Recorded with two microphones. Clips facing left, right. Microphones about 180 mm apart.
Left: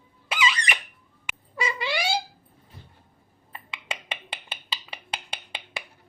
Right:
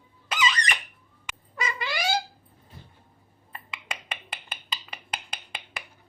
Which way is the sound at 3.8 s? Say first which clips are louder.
Left 3 dB; 30° left (ahead or behind).